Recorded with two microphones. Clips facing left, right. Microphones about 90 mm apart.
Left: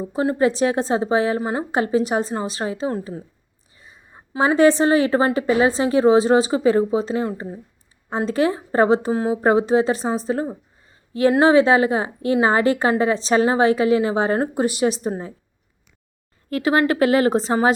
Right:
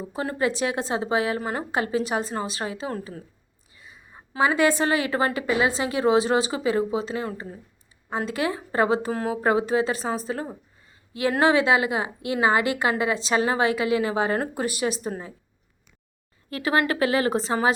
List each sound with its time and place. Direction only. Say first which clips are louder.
0.1 s a woman's voice: left 7 dB; 25° left (ahead or behind)
16.6 s a woman's voice: left 5 dB; 30° left (ahead or behind)